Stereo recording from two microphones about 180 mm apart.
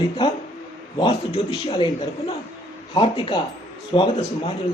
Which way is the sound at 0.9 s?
30° left (ahead or behind).